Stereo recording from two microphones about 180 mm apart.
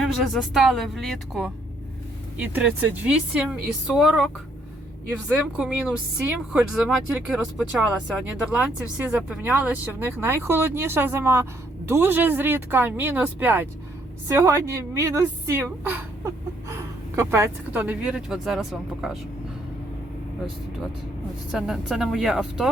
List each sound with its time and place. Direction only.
0.2 s speech: centre (ahead or behind)
21.5 s speech: centre (ahead or behind)